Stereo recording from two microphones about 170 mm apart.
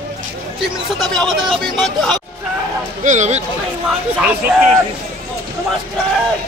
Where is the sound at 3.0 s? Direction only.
45° right (ahead or behind).